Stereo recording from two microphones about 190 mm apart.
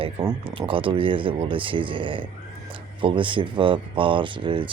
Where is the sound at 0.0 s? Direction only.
25° right (ahead or behind).